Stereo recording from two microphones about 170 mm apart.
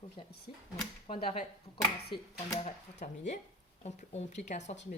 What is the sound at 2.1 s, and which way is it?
Speech, 70° left (ahead or behind).